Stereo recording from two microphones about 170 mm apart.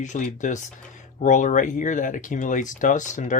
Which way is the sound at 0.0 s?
45° left (ahead or behind).